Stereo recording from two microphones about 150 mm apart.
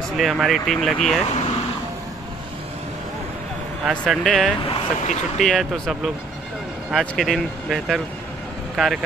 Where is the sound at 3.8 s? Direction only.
10° right (ahead or behind).